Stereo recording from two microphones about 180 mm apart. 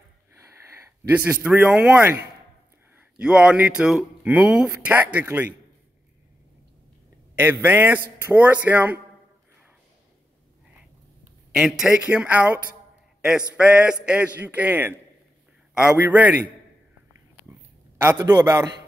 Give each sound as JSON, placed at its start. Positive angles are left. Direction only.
{"t": 0.4, "sound": "speech", "side_deg": -15}
{"t": 7.3, "sound": "speech", "side_deg": -10}
{"t": 11.5, "sound": "speech", "side_deg": -5}
{"t": 17.5, "sound": "a sound", "side_deg": -10}
{"t": 18.1, "sound": "a man's voice", "side_deg": -25}